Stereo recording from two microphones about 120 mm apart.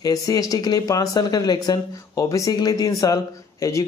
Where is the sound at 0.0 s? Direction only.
30° left (ahead or behind).